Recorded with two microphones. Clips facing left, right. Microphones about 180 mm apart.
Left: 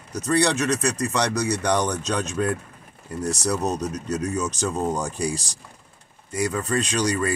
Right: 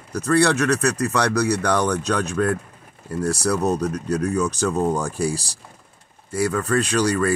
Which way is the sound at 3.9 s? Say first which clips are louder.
Right 4 dB; 60° right (ahead or behind).